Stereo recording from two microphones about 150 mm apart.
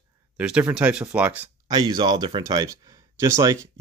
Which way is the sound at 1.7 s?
30° right (ahead or behind).